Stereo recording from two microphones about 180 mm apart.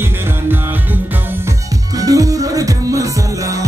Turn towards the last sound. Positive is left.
turn(degrees=-20)  # may be behind; listen again after turning